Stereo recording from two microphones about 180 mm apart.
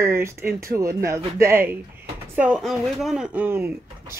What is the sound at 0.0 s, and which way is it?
Speech, 15° right (ahead or behind).